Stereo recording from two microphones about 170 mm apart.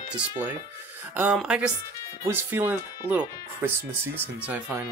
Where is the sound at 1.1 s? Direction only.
10° right (ahead or behind).